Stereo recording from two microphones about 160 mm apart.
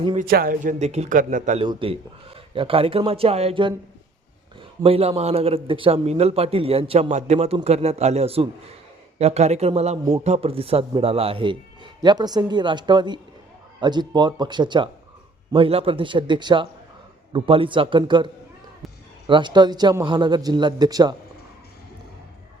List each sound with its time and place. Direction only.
0.2 s speech: 65° right (ahead or behind)
1.5 s a man's voice: 30° right (ahead or behind)
4.8 s a man's voice: 40° right (ahead or behind)
19.3 s speech: 30° right (ahead or behind)